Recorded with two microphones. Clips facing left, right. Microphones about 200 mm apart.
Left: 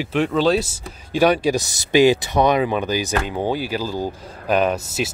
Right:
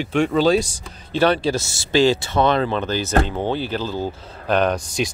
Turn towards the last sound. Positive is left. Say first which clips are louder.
# even
turn(degrees=5)  # may be behind; listen again after turning